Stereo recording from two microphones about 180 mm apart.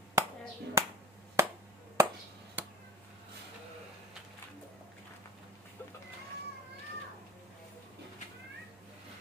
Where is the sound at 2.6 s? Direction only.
10° right (ahead or behind).